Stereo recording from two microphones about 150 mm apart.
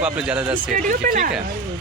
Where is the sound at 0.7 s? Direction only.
65° right (ahead or behind).